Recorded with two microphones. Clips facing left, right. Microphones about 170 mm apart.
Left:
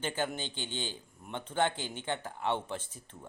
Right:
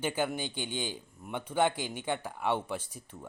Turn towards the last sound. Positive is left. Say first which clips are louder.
# right 3 dB
turn(degrees=-10)  # may be behind; listen again after turning